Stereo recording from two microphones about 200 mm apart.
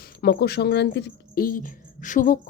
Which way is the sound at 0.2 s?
55° left (ahead or behind).